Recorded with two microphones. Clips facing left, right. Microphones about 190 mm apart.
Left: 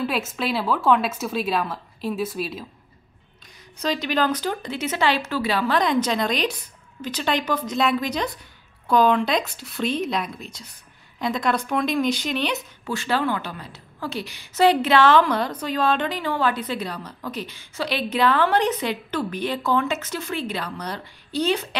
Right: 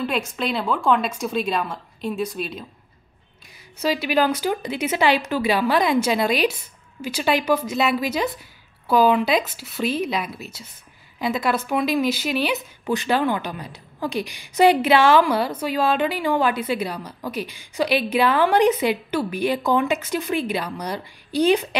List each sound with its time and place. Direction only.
0.0 s speech: 5° left (ahead or behind)
3.8 s a woman's voice: 10° right (ahead or behind)
12.8 s a woman's voice: 15° right (ahead or behind)